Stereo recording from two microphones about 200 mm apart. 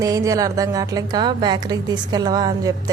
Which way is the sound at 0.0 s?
15° right (ahead or behind).